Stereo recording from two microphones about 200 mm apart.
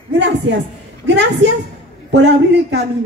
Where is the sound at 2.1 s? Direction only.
60° right (ahead or behind).